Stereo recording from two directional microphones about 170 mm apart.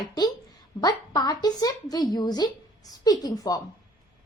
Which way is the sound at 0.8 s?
25° left (ahead or behind).